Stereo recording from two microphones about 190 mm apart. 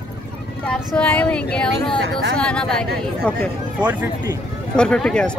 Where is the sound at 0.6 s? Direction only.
5° left (ahead or behind).